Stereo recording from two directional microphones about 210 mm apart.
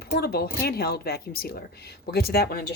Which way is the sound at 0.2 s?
50° left (ahead or behind).